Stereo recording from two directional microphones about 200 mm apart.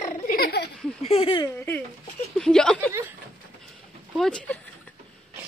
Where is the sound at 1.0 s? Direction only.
30° left (ahead or behind).